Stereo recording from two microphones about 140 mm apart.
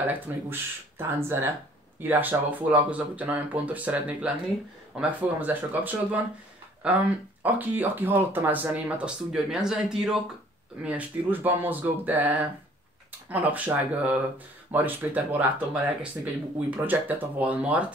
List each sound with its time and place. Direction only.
0.0 s speech: 15° right (ahead or behind)